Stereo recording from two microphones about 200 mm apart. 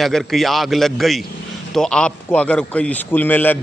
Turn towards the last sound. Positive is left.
turn(degrees=10)  # may be behind; listen again after turning